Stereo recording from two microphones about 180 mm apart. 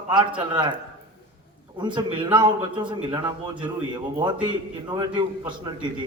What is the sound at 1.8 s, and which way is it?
A man's voice, 25° right (ahead or behind).